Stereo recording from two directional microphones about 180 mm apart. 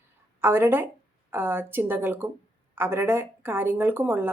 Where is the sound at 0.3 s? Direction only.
15° right (ahead or behind).